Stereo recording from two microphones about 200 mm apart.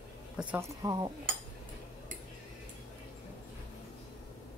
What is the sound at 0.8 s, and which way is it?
Speech, 20° right (ahead or behind).